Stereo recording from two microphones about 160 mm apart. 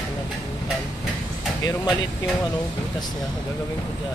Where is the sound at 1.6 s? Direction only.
20° left (ahead or behind).